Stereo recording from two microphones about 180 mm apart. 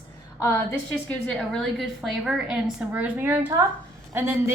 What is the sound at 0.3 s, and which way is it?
Speech, 20° left (ahead or behind).